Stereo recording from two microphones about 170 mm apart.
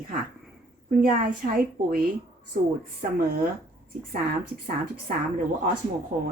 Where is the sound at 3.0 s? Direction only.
50° right (ahead or behind).